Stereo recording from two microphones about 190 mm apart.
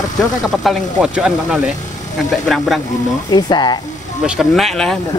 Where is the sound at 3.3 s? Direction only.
20° left (ahead or behind).